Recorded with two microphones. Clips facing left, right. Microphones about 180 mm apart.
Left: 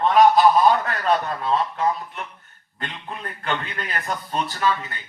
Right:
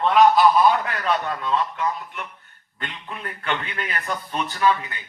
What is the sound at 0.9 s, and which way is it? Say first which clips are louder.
A man's voice: left 2 dB; 40° left (ahead or behind).